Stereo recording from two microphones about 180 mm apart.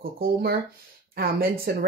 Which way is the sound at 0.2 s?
60° right (ahead or behind).